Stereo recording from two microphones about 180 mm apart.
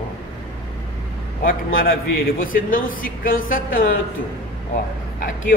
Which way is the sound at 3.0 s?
50° left (ahead or behind).